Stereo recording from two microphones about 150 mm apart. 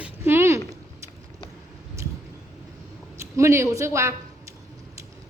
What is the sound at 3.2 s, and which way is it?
Speech, 20° right (ahead or behind).